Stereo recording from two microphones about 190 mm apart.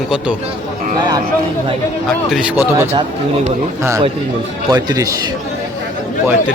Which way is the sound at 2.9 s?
35° right (ahead or behind).